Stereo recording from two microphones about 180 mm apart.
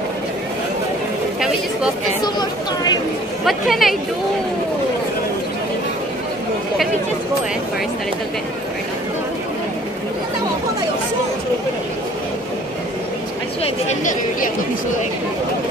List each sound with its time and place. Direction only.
3.4 s speech: centre (ahead or behind)
13.8 s speech: 45° left (ahead or behind)